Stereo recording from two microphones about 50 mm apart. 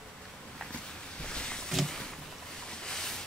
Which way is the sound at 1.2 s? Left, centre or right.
Centre.